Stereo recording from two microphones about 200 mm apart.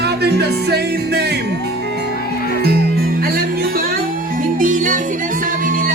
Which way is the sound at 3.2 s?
50° right (ahead or behind).